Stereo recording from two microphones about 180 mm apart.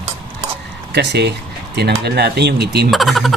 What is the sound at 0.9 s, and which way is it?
Speech, 70° right (ahead or behind).